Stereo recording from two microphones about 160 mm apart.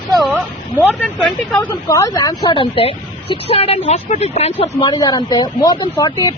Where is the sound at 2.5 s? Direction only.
35° left (ahead or behind).